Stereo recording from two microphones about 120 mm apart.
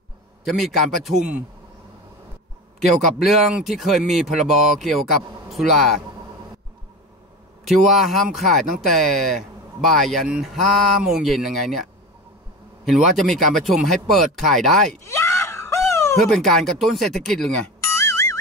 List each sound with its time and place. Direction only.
0.5 s speech: centre (ahead or behind)
3.0 s speech: 5° right (ahead or behind)
7.6 s speech: centre (ahead or behind)
15.0 s screaming: 20° left (ahead or behind)
16.3 s speech: centre (ahead or behind)
17.7 s music: 25° left (ahead or behind)